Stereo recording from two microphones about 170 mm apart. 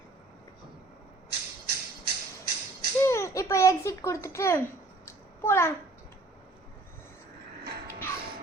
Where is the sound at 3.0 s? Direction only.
15° left (ahead or behind).